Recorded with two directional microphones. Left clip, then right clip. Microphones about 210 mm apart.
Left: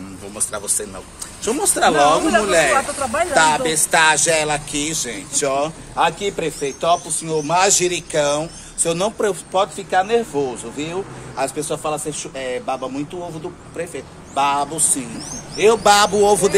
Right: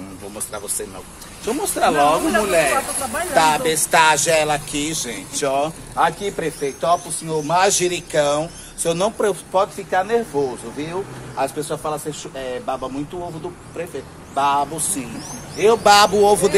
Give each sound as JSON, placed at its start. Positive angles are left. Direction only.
{"t": 1.4, "sound": "speech", "side_deg": 15}
{"t": 3.0, "sound": "speech", "side_deg": 45}
{"t": 3.3, "sound": "speech", "side_deg": 0}
{"t": 14.3, "sound": "speech", "side_deg": 0}